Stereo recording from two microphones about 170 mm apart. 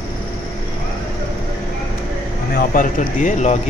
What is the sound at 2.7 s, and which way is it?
Speech, 50° left (ahead or behind).